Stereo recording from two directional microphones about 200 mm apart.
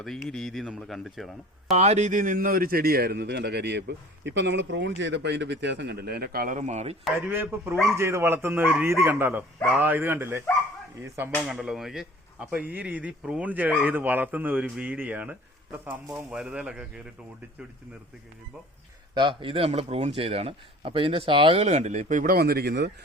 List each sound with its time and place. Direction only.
0.0 s speech: centre (ahead or behind)
1.7 s a man's voice: 35° right (ahead or behind)
7.3 s speech: 10° right (ahead or behind)
11.4 s speech: 5° right (ahead or behind)
19.1 s speech: 25° right (ahead or behind); by 22.9 s 55° right (ahead or behind)